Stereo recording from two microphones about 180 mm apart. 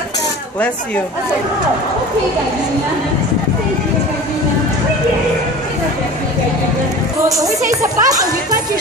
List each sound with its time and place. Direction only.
7.2 s speech: 20° right (ahead or behind)